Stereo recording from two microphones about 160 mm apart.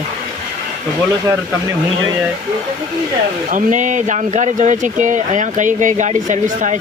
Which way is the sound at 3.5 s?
50° right (ahead or behind).